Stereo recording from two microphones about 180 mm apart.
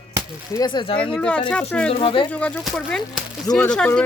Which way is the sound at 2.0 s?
25° left (ahead or behind).